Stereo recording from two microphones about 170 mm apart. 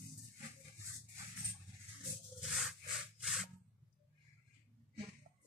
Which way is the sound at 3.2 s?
Centre (ahead or behind).